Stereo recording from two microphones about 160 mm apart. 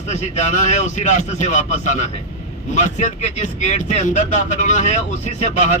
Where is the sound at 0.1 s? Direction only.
45° left (ahead or behind).